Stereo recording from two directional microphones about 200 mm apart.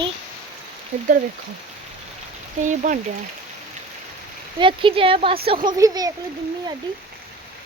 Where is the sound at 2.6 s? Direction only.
40° right (ahead or behind).